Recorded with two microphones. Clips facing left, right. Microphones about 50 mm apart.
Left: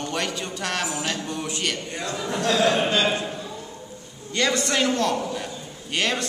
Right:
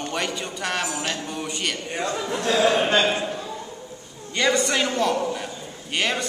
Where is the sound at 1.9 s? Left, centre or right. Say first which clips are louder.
Right 2 dB; right.